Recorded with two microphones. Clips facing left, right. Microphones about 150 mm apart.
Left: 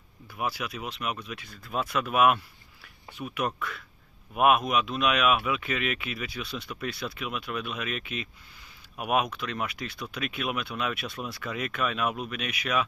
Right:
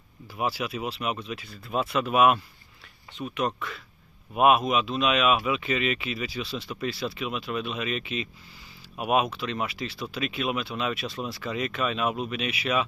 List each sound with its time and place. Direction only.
0.4 s speech: 25° right (ahead or behind)
0.7 s speech: 5° right (ahead or behind)